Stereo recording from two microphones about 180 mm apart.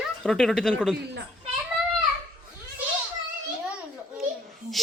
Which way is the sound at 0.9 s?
70° right (ahead or behind).